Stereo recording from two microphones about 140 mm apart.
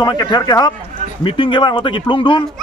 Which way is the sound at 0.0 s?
30° left (ahead or behind).